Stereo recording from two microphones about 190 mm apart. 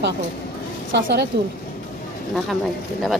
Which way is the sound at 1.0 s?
65° right (ahead or behind).